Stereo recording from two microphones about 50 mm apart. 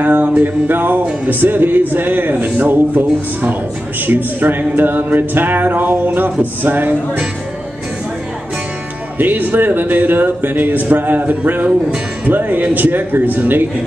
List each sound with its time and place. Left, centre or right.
0.0 s speech: right
9.2 s speech: right